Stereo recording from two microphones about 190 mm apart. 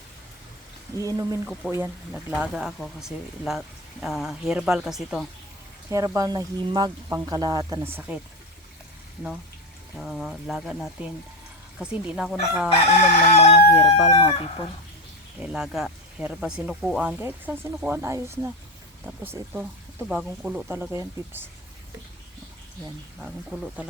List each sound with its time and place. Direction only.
0.9 s speech: 15° right (ahead or behind)
1.6 s speech: 5° right (ahead or behind)
5.9 s speech: 15° right (ahead or behind)
10.0 s speech: centre (ahead or behind)
12.9 s chicken: 35° left (ahead or behind)
15.4 s speech: 5° right (ahead or behind)
23.2 s speech: centre (ahead or behind)